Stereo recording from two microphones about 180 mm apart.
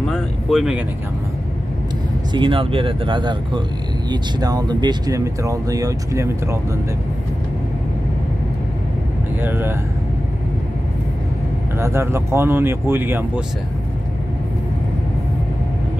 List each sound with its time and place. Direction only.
0.0 s speech: centre (ahead or behind)
2.3 s speech: 30° right (ahead or behind)
9.4 s speech: 10° right (ahead or behind)
11.8 s speech: 15° right (ahead or behind)